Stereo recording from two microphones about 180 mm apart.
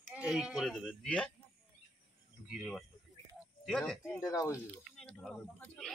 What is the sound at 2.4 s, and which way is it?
Speech, centre (ahead or behind).